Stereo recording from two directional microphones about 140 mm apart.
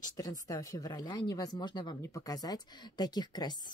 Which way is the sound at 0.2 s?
25° left (ahead or behind).